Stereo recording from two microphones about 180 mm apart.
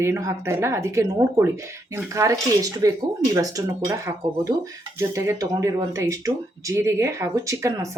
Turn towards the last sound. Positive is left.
turn(degrees=-15)  # may be behind; listen again after turning